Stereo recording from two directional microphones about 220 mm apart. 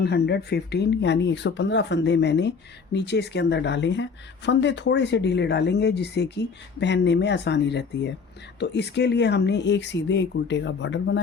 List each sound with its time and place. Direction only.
0.0 s speech: 50° left (ahead or behind)